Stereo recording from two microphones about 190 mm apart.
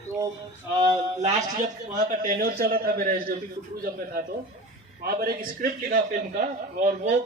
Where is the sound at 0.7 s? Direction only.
40° right (ahead or behind).